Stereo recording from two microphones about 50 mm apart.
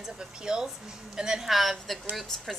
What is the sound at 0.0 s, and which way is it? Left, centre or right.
A woman's voice, centre.